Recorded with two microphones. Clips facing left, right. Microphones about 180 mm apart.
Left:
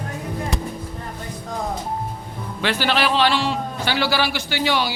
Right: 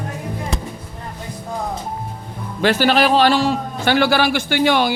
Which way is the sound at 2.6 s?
45° right (ahead or behind).